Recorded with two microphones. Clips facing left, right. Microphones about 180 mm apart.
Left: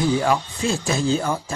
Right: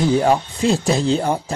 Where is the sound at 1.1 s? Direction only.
35° right (ahead or behind).